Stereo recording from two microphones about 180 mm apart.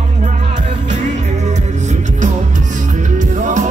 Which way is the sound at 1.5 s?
40° right (ahead or behind).